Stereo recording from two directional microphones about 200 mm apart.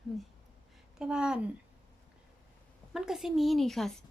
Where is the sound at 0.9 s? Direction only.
5° right (ahead or behind).